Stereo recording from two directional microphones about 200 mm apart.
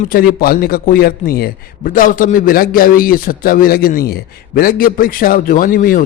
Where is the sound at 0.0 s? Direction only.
45° left (ahead or behind).